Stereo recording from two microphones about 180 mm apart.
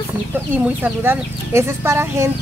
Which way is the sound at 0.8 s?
15° right (ahead or behind).